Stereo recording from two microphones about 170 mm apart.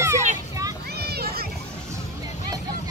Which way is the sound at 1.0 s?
65° right (ahead or behind).